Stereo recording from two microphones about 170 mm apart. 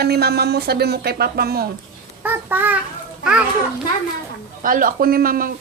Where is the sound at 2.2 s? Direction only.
10° right (ahead or behind).